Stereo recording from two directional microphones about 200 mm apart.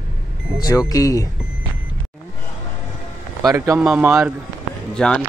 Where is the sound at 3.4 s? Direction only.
15° right (ahead or behind).